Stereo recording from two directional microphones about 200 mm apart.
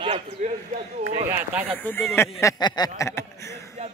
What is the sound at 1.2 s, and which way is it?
Speech, 5° right (ahead or behind).